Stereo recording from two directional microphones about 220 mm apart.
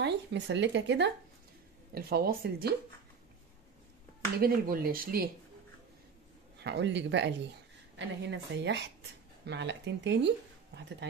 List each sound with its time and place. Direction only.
0.0 s speech: 55° right (ahead or behind)
4.4 s speech: 40° right (ahead or behind)
6.6 s speech: 50° right (ahead or behind)